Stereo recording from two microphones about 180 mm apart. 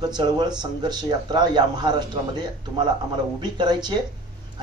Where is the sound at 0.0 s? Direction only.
25° right (ahead or behind).